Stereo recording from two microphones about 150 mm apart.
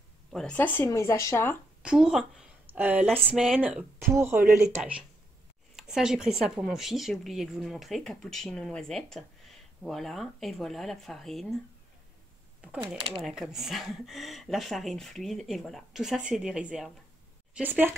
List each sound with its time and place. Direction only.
0.3 s speech: 5° left (ahead or behind)
1.8 s speech: 5° right (ahead or behind)
5.8 s speech: 5° right (ahead or behind)
13.2 s speech: centre (ahead or behind)